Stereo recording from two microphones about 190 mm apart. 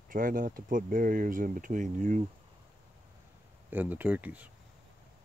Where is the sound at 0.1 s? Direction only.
45° right (ahead or behind).